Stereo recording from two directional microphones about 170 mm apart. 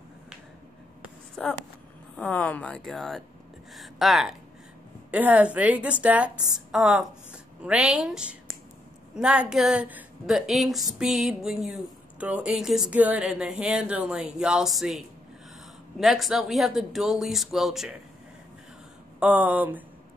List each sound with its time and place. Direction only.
1.4 s a woman's voice: 5° left (ahead or behind)
19.1 s a woman's voice: 10° right (ahead or behind)